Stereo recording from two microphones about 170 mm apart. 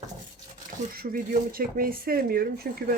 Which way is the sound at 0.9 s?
55° right (ahead or behind).